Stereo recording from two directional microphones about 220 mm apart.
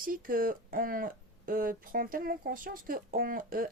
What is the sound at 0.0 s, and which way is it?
Speech, 40° right (ahead or behind).